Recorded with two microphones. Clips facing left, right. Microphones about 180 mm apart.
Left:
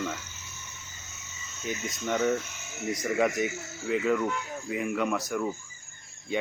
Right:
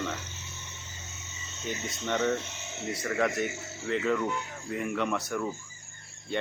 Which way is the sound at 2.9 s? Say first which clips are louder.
Left 3 dB; 15° left (ahead or behind).